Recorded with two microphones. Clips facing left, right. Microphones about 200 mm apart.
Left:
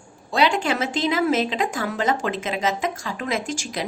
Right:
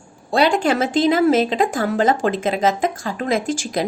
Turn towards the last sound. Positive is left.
turn(degrees=-40)  # may be behind; listen again after turning